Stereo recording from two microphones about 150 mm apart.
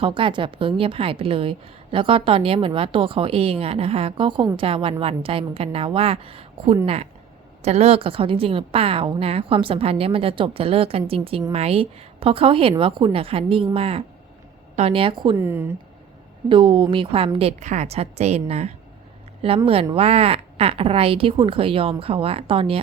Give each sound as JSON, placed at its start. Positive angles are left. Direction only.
{"t": 0.0, "sound": "a woman's voice", "side_deg": -35}
{"t": 15.4, "sound": "speech", "side_deg": -15}
{"t": 16.5, "sound": "a woman's voice", "side_deg": -35}